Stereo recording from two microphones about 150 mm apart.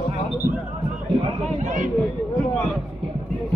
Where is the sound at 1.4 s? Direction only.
55° right (ahead or behind).